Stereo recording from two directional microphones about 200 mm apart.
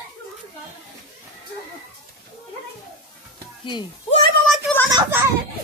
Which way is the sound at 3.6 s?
25° left (ahead or behind).